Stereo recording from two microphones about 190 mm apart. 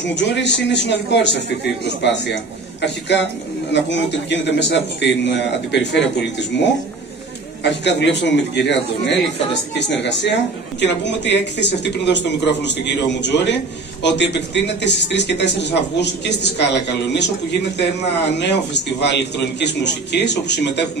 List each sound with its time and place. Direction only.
0.0 s speech: 65° left (ahead or behind)
18.4 s speech: 65° left (ahead or behind)